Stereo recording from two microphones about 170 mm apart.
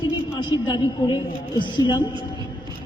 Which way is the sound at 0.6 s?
25° left (ahead or behind).